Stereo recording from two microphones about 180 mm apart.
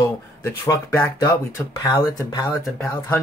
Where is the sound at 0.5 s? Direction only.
15° left (ahead or behind).